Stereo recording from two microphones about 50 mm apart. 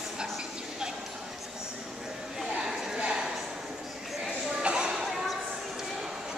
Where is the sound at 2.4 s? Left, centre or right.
Centre.